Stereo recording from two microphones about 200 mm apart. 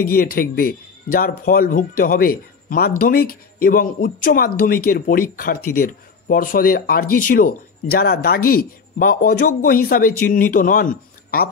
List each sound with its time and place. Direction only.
0.0 s speech: 45° left (ahead or behind)